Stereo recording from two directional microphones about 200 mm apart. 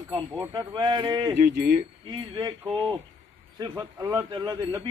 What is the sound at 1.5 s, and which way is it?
Speech, 50° right (ahead or behind).